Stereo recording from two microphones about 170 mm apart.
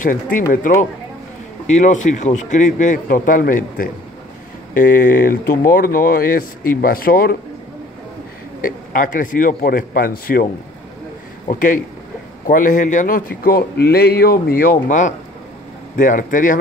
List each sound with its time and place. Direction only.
0.0 s a man's voice: 55° left (ahead or behind)
1.7 s a man's voice: 45° left (ahead or behind)
8.5 s a man's voice: 55° left (ahead or behind)